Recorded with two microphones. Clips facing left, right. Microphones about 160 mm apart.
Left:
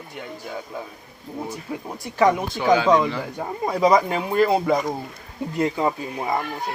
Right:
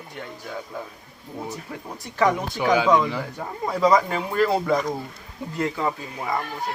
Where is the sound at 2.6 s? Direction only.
10° right (ahead or behind).